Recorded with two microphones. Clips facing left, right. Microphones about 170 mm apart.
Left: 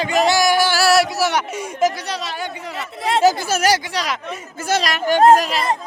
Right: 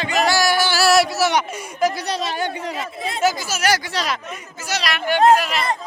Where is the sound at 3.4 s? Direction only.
55° left (ahead or behind).